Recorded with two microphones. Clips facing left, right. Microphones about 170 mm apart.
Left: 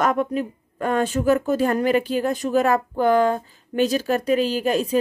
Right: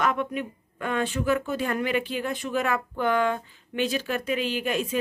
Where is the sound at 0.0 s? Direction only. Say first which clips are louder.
Left 5 dB; 40° left (ahead or behind).